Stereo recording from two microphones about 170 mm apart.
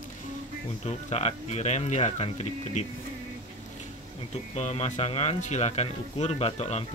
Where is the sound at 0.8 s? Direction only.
40° left (ahead or behind).